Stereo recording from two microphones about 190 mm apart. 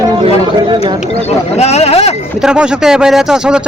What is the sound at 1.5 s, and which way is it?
Speech, 35° left (ahead or behind).